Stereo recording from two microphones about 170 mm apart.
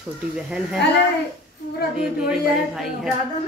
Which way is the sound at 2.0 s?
5° right (ahead or behind).